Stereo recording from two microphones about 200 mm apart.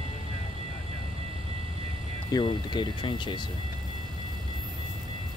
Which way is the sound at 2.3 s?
20° left (ahead or behind).